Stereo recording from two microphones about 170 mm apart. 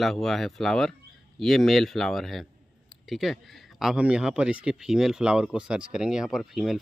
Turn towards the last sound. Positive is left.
turn(degrees=0)  # may be behind; listen again after turning